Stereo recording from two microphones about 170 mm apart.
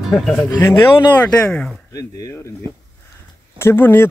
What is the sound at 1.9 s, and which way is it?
Speech, 20° left (ahead or behind).